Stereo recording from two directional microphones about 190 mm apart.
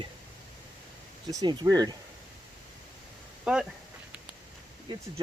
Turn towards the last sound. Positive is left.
turn(degrees=-25)  # may be behind; listen again after turning